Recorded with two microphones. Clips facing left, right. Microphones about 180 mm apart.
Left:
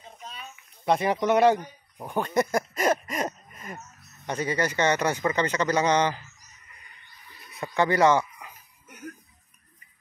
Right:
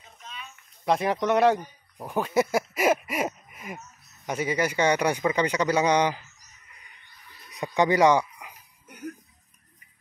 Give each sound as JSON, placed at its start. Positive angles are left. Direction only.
{"t": 0.0, "sound": "a sound", "side_deg": 35}
{"t": 0.8, "sound": "speech", "side_deg": 0}
{"t": 7.5, "sound": "speech", "side_deg": -15}